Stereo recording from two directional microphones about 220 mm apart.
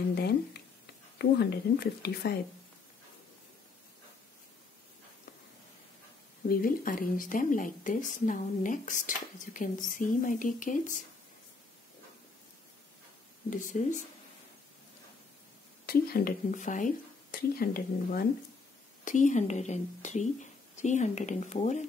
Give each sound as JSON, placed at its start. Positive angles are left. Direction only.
{"t": 0.1, "sound": "a sound", "side_deg": 45}
{"t": 1.1, "sound": "speech", "side_deg": 50}
{"t": 6.5, "sound": "a woman's voice", "side_deg": 40}
{"t": 13.5, "sound": "a woman's voice", "side_deg": 35}
{"t": 15.8, "sound": "a woman's voice", "side_deg": 45}